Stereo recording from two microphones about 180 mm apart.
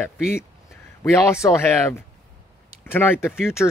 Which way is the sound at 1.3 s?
15° left (ahead or behind).